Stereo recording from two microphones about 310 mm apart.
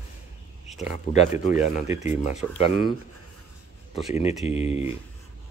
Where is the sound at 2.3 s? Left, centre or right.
Left.